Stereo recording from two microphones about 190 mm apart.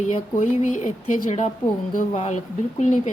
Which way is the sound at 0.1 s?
40° left (ahead or behind).